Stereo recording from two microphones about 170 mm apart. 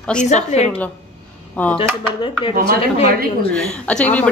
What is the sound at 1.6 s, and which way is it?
Speech, 10° left (ahead or behind).